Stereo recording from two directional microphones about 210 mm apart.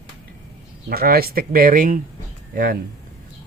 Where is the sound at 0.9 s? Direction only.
45° right (ahead or behind).